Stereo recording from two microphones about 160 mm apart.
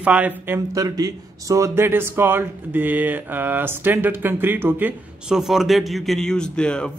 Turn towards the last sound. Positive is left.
turn(degrees=5)  # may be behind; listen again after turning